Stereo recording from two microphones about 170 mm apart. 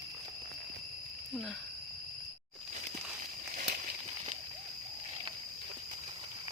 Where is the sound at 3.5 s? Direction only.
50° right (ahead or behind).